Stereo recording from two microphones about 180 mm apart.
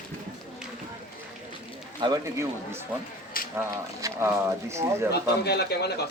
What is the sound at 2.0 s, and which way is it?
A man's voice, 20° right (ahead or behind).